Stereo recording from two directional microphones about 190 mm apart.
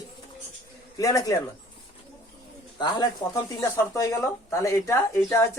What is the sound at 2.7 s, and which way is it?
Speech, 20° left (ahead or behind).